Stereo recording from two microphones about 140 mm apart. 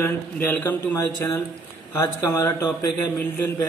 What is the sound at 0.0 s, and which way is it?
Speech, 15° left (ahead or behind).